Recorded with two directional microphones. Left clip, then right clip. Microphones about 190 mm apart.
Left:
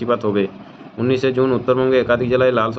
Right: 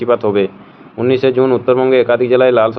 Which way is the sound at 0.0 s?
30° right (ahead or behind).